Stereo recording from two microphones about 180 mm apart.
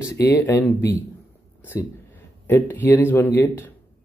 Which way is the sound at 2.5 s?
10° left (ahead or behind).